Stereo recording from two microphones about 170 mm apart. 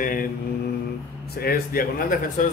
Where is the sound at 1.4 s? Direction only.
60° left (ahead or behind).